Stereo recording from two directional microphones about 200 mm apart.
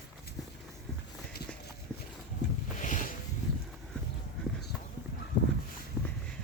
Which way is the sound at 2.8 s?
40° left (ahead or behind).